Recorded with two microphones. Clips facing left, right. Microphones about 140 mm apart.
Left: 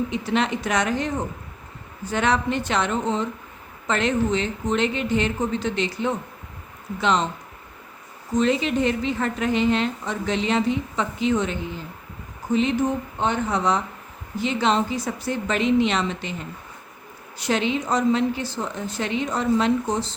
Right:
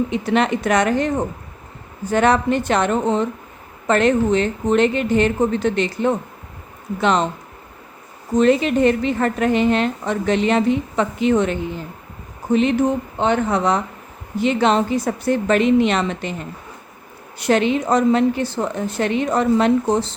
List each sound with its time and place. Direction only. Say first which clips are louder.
0.1 s a woman's voice: right 5 dB; 55° right (ahead or behind)
8.4 s a woman's voice: right 6 dB; 55° right (ahead or behind)
12.5 s a woman's voice: right 4 dB; 60° right (ahead or behind)
17.3 s a woman's voice: right 6 dB; 55° right (ahead or behind)